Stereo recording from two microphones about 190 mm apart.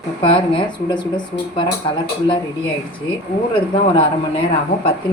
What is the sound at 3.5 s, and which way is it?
Speech, 25° left (ahead or behind).